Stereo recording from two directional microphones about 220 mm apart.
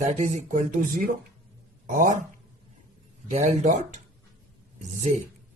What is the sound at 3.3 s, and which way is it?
Speech, 35° right (ahead or behind).